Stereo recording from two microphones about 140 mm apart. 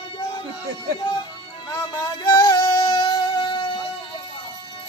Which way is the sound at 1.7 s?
25° left (ahead or behind).